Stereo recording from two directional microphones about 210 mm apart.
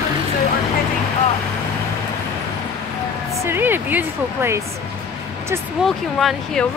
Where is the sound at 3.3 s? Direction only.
10° right (ahead or behind).